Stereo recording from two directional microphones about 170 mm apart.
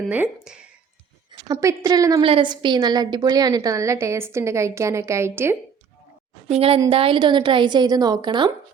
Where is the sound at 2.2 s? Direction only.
30° right (ahead or behind); by 5.6 s 15° right (ahead or behind).